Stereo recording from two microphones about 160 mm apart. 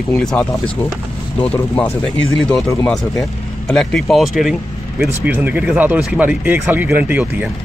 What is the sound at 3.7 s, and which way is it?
Speech, 5° left (ahead or behind).